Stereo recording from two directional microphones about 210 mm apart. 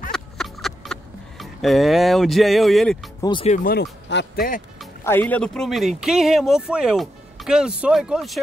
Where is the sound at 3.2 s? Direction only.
25° left (ahead or behind).